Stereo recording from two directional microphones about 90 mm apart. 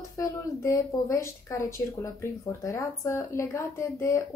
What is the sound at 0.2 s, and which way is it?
A woman's voice, 35° left (ahead or behind).